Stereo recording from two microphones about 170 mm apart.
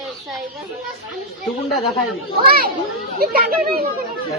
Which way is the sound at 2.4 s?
60° right (ahead or behind).